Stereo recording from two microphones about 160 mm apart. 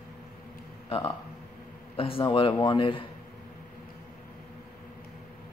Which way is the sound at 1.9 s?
35° left (ahead or behind).